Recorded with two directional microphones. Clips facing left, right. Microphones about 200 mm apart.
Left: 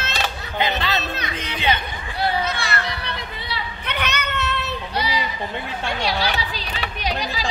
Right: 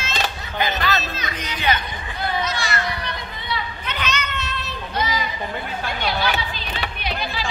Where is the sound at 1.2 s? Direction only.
60° left (ahead or behind).